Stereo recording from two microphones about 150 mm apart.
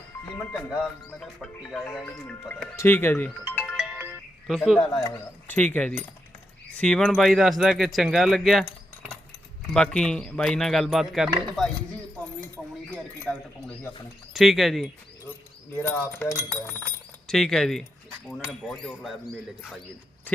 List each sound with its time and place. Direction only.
0.3 s speech: 10° left (ahead or behind)
3.8 s ringtone: 10° right (ahead or behind)
4.4 s speech: centre (ahead or behind)
4.9 s speech: 20° left (ahead or behind)
5.5 s speech: 10° left (ahead or behind)
9.7 s speech: 5° left (ahead or behind)
14.3 s speech: centre (ahead or behind)
15.8 s speech: 15° left (ahead or behind)
17.2 s speech: 5° left (ahead or behind)